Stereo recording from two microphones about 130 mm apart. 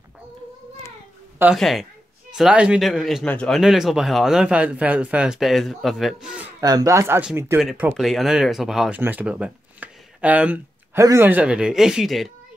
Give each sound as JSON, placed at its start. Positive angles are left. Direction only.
{"t": 1.6, "sound": "a man's voice", "side_deg": 0}
{"t": 6.6, "sound": "speech", "side_deg": -30}
{"t": 8.0, "sound": "a man's voice", "side_deg": 0}
{"t": 11.0, "sound": "speech", "side_deg": -20}